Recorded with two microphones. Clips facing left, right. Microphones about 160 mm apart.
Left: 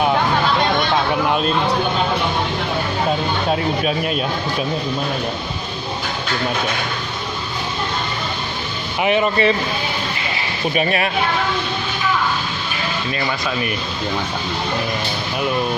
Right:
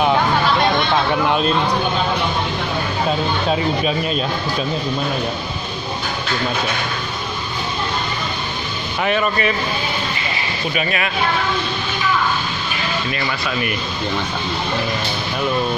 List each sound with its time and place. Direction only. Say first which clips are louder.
9.0 s speech: left 3 dB; 20° left (ahead or behind)
10.7 s speech: left 3 dB; 40° left (ahead or behind)